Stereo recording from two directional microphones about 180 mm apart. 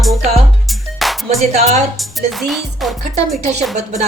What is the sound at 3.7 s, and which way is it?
Speech, 40° right (ahead or behind).